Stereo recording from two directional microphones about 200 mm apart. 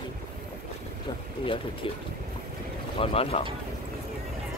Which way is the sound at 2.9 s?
30° left (ahead or behind).